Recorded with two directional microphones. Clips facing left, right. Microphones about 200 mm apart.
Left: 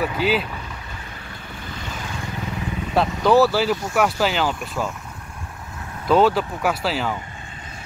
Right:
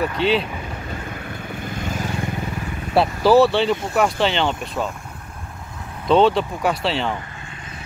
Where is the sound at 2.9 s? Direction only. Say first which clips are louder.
Right 2 dB; 5° right (ahead or behind).